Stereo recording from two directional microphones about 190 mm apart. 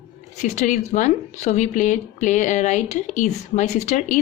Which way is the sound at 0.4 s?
40° left (ahead or behind).